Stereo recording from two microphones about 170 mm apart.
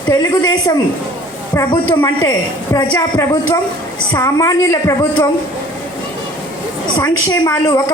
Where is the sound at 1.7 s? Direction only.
30° left (ahead or behind).